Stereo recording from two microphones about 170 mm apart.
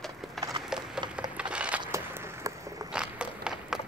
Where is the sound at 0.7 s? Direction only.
5° right (ahead or behind).